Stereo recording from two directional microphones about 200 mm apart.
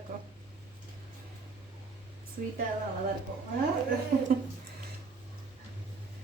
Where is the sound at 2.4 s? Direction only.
45° right (ahead or behind).